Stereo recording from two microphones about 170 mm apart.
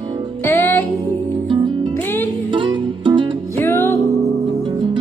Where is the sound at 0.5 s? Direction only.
15° left (ahead or behind).